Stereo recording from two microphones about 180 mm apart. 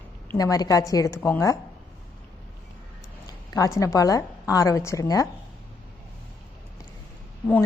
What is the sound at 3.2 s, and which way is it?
A woman's voice, 20° left (ahead or behind).